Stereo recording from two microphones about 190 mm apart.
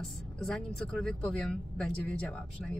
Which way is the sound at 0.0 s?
Centre (ahead or behind).